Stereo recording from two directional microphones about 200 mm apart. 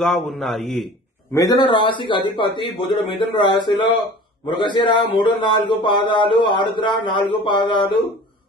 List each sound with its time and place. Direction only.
0.0 s a man's voice: centre (ahead or behind)
1.3 s speech: 20° left (ahead or behind)
2.9 s a man's voice: centre (ahead or behind)
3.3 s speech: 20° left (ahead or behind)